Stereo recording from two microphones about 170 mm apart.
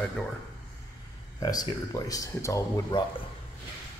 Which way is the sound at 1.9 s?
20° left (ahead or behind).